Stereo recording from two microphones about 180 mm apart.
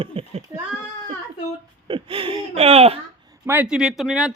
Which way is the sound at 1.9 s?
30° right (ahead or behind).